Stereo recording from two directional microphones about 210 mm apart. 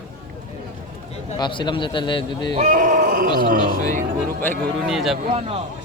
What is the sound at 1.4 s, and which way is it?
A man's voice, 20° left (ahead or behind).